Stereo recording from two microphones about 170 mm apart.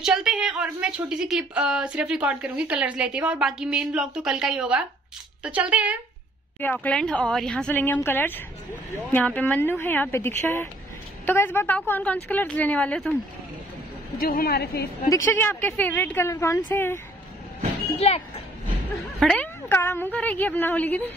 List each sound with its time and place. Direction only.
0.0 s a woman's voice: 5° right (ahead or behind)
6.6 s a woman's voice: 10° left (ahead or behind)
14.2 s a woman's voice: 60° left (ahead or behind)
15.0 s a woman's voice: 15° left (ahead or behind)
17.9 s speech: 35° left (ahead or behind)
19.1 s a woman's voice: 5° left (ahead or behind)